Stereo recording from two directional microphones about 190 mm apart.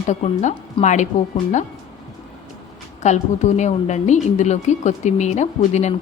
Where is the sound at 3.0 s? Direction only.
40° left (ahead or behind).